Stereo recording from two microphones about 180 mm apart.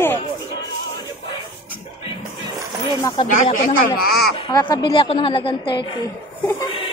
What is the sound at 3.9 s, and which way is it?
Speech, 60° left (ahead or behind).